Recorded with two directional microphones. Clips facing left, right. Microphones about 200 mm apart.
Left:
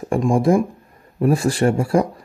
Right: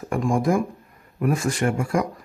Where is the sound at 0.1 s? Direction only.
30° left (ahead or behind).